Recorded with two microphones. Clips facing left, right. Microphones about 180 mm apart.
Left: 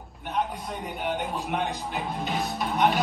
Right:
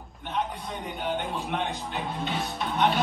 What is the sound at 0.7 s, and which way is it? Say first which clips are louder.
Speech: left 1 dB; 5° left (ahead or behind).